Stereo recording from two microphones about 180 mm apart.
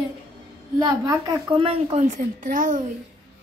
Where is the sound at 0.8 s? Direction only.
20° right (ahead or behind); by 2.8 s 45° right (ahead or behind).